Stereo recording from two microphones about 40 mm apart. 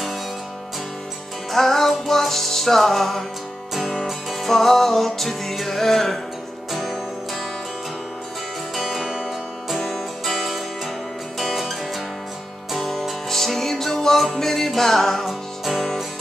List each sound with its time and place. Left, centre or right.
1.5 s music: centre
8.7 s music: centre
9.0 s music: centre
9.7 s music: centre
12.7 s music: centre